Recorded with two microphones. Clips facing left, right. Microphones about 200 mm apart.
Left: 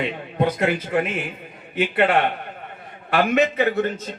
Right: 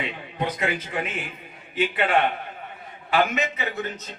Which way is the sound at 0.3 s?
55° left (ahead or behind).